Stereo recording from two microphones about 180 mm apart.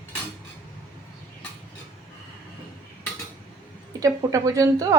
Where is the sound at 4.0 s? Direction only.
20° right (ahead or behind).